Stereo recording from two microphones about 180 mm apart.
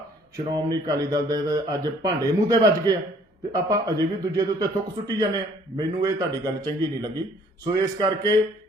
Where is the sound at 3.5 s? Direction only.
20° right (ahead or behind).